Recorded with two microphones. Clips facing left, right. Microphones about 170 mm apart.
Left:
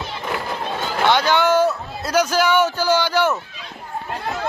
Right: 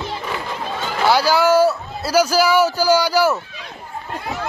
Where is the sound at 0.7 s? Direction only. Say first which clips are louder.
Right 1 dB; 10° right (ahead or behind).